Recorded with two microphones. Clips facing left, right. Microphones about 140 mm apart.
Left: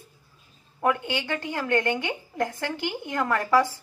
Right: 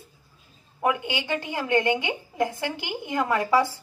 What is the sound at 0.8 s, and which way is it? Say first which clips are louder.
A woman's voice: even; 15° right (ahead or behind).